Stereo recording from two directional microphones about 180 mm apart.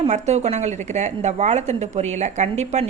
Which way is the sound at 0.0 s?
40° right (ahead or behind).